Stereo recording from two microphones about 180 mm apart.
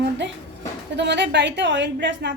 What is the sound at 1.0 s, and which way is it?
A woman's voice, 75° right (ahead or behind).